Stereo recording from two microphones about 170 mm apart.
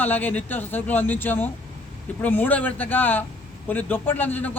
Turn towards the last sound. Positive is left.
turn(degrees=10)  # may be behind; listen again after turning